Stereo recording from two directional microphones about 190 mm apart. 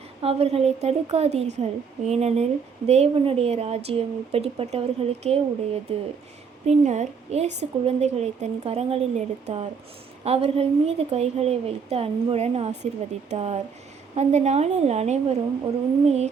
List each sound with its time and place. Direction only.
0.2 s speech: 30° right (ahead or behind)